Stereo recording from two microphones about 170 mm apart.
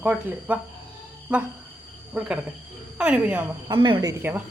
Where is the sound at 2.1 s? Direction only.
10° right (ahead or behind).